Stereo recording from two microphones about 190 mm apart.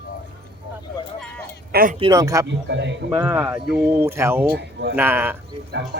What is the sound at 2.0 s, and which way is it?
Speech, 20° right (ahead or behind).